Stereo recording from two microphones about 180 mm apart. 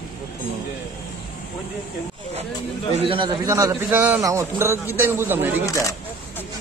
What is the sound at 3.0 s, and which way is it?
A man's voice, 30° right (ahead or behind).